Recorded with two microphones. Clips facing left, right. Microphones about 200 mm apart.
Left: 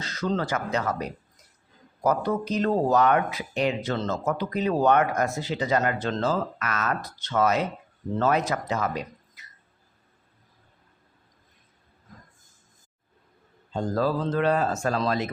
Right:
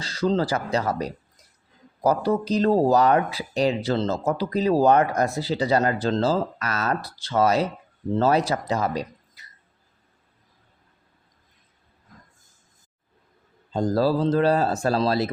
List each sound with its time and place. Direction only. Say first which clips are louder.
0.0 s speech: right 5 dB; 30° right (ahead or behind)
13.7 s speech: right 4 dB; 35° right (ahead or behind)